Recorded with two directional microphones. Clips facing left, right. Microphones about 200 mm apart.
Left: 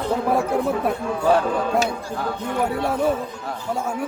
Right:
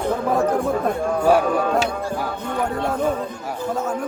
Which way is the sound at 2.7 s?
10° left (ahead or behind).